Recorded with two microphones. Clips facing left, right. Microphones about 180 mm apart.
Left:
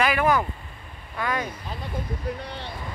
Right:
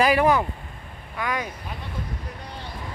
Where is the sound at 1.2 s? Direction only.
10° right (ahead or behind).